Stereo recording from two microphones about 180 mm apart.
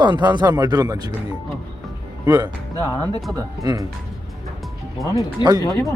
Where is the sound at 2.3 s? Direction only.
20° right (ahead or behind).